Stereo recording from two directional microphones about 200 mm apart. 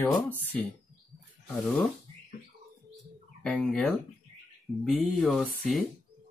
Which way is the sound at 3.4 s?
5° left (ahead or behind).